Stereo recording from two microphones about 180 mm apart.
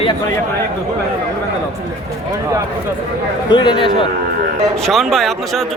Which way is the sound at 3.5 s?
25° left (ahead or behind).